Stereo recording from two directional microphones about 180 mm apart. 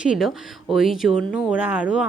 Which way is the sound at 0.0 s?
5° right (ahead or behind).